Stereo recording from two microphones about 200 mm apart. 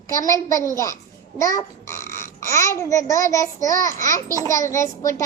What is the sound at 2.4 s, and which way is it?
A child's voice, 15° left (ahead or behind).